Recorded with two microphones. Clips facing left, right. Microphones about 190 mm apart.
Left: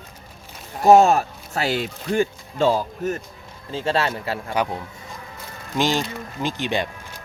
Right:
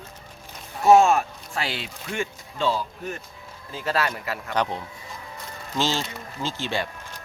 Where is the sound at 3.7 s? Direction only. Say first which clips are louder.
Left 4 dB; 30° left (ahead or behind).